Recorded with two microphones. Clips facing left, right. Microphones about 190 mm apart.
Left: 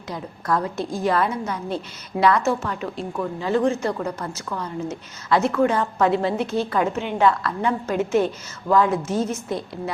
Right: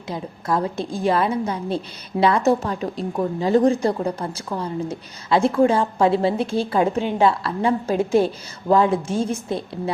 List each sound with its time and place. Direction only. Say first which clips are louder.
0.1 s a woman's voice: right 1 dB; 25° right (ahead or behind)